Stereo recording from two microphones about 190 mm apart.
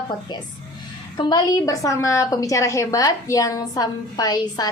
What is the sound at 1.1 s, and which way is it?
A woman's voice, 25° left (ahead or behind).